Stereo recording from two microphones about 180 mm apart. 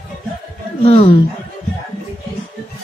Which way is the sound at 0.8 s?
35° left (ahead or behind).